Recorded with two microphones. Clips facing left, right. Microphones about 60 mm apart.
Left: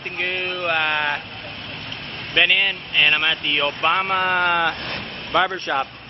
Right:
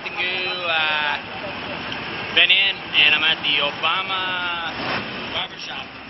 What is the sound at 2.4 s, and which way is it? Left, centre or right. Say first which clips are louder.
Speech: left 1 dB; centre.